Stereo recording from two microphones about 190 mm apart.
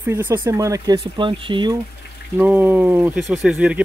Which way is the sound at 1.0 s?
25° right (ahead or behind).